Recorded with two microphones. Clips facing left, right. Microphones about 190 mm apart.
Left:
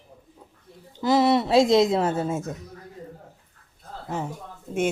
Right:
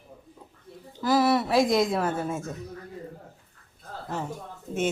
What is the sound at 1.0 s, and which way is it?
A woman's voice, 20° left (ahead or behind).